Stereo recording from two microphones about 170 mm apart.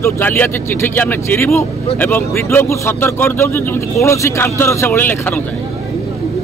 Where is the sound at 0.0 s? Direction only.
10° left (ahead or behind).